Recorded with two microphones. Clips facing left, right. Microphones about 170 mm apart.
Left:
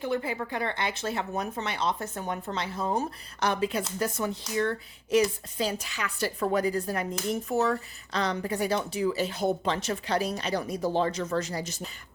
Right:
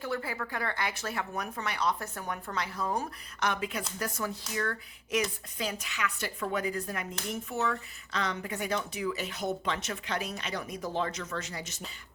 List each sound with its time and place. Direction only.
0.0 s speech: 20° left (ahead or behind); by 11.8 s 35° left (ahead or behind)